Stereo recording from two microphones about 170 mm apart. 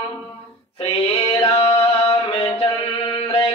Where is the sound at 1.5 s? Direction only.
35° left (ahead or behind).